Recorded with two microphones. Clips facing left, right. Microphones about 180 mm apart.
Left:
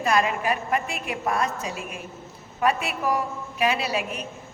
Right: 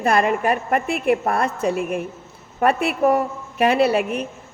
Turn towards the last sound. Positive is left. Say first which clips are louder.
# right 10 dB
turn(degrees=-55)  # may be behind; listen again after turning